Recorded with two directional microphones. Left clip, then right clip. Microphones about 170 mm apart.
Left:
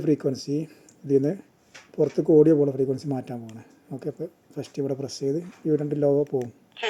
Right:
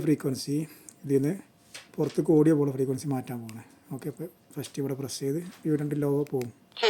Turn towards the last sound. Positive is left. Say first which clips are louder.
# right 4 dB
turn(degrees=-30)  # may be behind; listen again after turning